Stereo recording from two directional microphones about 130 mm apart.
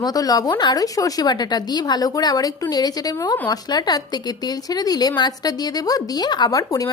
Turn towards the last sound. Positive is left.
turn(degrees=25)  # may be behind; listen again after turning